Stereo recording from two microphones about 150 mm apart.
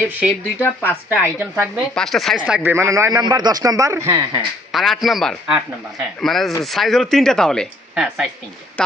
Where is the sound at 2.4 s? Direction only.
10° right (ahead or behind).